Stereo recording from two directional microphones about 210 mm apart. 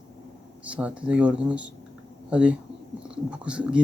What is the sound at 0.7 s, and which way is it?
Speech, 5° right (ahead or behind).